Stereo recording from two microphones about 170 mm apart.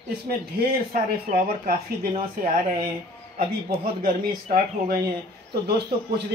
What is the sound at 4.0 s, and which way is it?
Speech, 55° right (ahead or behind).